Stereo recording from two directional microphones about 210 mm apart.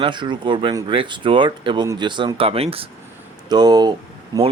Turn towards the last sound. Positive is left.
turn(degrees=-20)  # may be behind; listen again after turning